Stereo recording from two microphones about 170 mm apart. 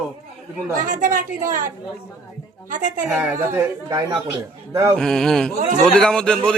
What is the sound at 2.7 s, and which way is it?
Speech, 50° right (ahead or behind).